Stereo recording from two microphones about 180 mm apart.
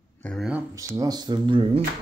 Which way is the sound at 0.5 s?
15° right (ahead or behind).